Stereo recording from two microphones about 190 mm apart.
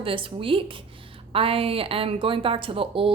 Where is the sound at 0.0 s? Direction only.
30° right (ahead or behind).